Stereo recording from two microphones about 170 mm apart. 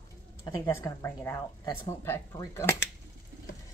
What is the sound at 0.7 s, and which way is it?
Speech, 15° left (ahead or behind).